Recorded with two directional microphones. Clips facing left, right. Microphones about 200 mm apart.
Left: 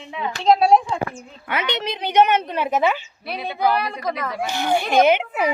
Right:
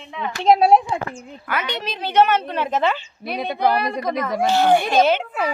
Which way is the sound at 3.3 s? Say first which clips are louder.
Right 1 dB; 45° right (ahead or behind).